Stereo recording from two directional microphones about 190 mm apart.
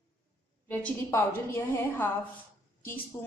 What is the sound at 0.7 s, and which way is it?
Speech, 10° left (ahead or behind).